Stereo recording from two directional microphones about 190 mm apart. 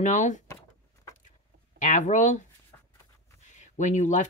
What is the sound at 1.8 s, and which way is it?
Speech, 40° left (ahead or behind).